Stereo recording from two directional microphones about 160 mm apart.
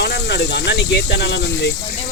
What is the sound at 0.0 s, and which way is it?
Speech, 90° left.